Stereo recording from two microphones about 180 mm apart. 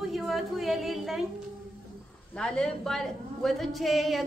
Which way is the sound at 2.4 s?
5° left (ahead or behind).